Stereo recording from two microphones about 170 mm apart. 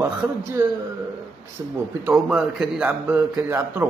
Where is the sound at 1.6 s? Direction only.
20° right (ahead or behind).